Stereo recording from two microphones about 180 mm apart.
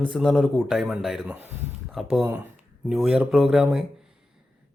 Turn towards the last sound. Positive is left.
turn(degrees=-5)  # may be behind; listen again after turning